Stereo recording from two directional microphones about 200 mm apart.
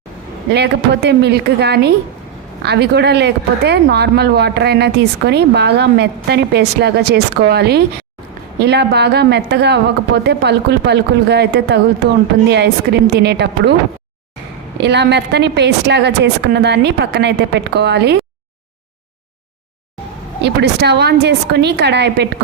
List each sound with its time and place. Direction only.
0.5 s a woman's voice: 55° right (ahead or behind)
14.8 s a woman's voice: 55° right (ahead or behind)
20.4 s a woman's voice: 55° right (ahead or behind)